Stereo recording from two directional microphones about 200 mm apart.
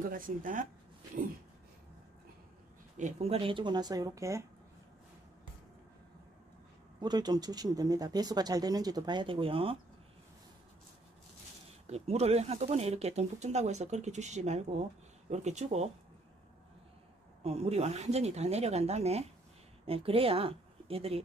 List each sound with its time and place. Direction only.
0.1 s speech: 45° right (ahead or behind)
3.0 s speech: 35° right (ahead or behind); by 4.5 s 15° right (ahead or behind)
7.0 s speech: 20° right (ahead or behind)
11.9 s speech: 30° right (ahead or behind)
17.4 s speech: 30° right (ahead or behind)